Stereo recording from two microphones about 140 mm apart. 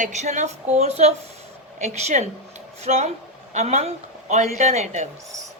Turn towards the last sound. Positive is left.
turn(degrees=-55)  # may be behind; listen again after turning